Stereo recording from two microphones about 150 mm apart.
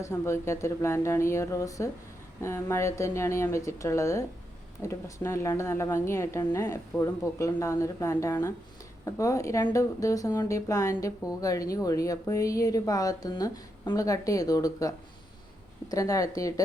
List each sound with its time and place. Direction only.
0.0 s a woman's voice: 20° left (ahead or behind)